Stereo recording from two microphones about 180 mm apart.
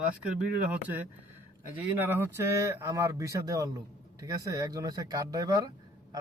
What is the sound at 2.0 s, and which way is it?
A man's voice, 10° right (ahead or behind).